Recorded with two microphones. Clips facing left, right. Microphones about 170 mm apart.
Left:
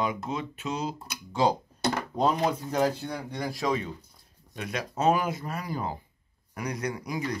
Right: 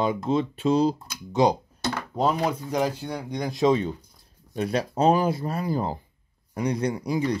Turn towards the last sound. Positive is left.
turn(degrees=-30)  # may be behind; listen again after turning